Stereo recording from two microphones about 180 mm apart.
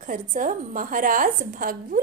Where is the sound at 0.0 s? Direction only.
45° right (ahead or behind).